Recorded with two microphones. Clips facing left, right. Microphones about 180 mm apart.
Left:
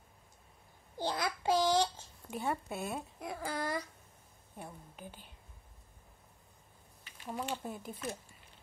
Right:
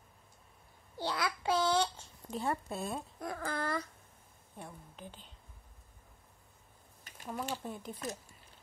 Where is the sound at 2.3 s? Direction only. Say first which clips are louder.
Right 1 dB; 10° left (ahead or behind).